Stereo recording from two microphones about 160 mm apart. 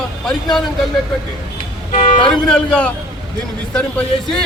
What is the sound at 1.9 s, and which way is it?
Vehicle, 55° left (ahead or behind).